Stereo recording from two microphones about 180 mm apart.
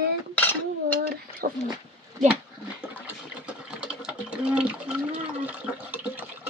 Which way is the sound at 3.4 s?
5° right (ahead or behind).